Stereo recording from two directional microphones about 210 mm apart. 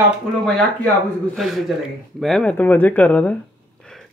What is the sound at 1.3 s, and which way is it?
Speech, centre (ahead or behind).